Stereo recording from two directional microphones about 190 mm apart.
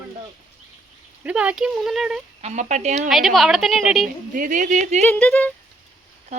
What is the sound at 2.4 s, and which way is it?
Speech, 35° right (ahead or behind).